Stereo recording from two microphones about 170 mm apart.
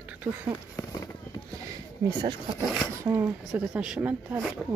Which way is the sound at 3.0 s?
15° right (ahead or behind).